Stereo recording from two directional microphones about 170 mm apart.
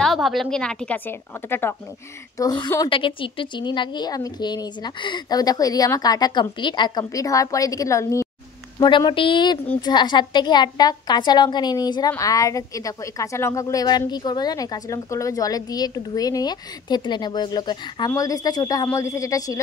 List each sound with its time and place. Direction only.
0.0 s a woman's voice: centre (ahead or behind); by 19.6 s 20° left (ahead or behind)